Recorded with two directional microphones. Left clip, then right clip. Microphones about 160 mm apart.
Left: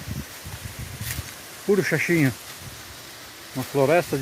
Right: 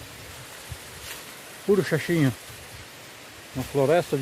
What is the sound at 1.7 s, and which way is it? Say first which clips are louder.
Speech: left 2 dB; 10° right (ahead or behind).